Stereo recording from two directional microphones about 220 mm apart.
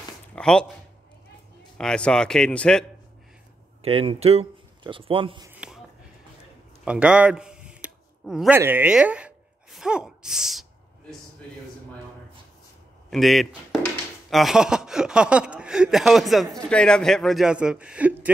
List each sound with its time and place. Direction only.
0.4 s speech: 5° left (ahead or behind)
1.8 s speech: 5° left (ahead or behind)
3.8 s speech: 25° right (ahead or behind)
5.5 s a sound: 5° right (ahead or behind)
6.8 s a sound: 5° right (ahead or behind)
13.1 s speech: centre (ahead or behind)